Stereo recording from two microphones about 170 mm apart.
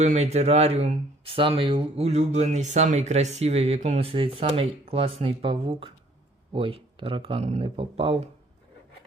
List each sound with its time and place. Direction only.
0.0 s speech: 40° right (ahead or behind)